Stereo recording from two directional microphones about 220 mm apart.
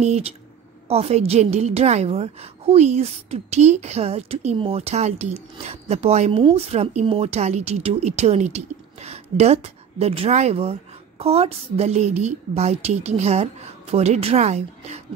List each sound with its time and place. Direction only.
0.0 s a woman's voice: 30° right (ahead or behind)